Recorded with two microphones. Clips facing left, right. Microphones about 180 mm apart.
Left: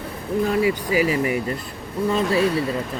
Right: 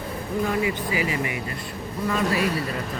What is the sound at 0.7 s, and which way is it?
Speech, 40° left (ahead or behind).